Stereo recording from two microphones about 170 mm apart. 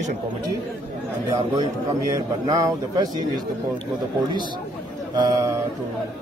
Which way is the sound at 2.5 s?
25° right (ahead or behind).